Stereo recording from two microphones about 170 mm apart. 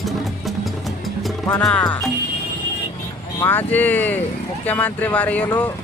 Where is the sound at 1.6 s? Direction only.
5° left (ahead or behind).